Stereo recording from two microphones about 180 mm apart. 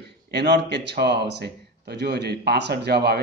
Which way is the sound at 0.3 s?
70° right (ahead or behind).